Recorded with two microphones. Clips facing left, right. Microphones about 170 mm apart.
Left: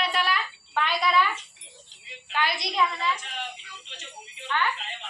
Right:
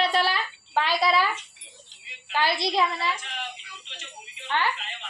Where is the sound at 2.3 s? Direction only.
30° right (ahead or behind).